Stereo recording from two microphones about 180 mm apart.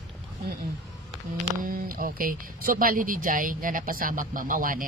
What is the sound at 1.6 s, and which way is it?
Speech, 50° right (ahead or behind).